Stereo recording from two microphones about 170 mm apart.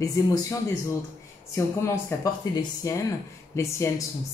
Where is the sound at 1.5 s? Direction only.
20° left (ahead or behind).